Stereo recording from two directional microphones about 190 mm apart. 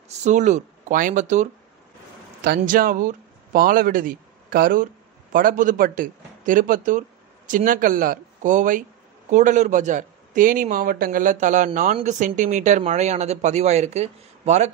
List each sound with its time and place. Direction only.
0.2 s a man's voice: 40° right (ahead or behind)